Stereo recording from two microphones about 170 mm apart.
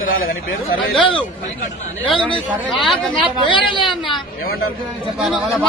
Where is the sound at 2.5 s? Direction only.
Centre (ahead or behind).